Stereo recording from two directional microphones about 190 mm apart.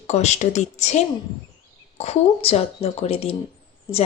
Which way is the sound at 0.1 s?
35° left (ahead or behind).